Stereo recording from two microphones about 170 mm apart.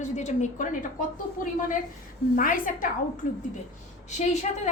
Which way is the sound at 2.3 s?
55° left (ahead or behind).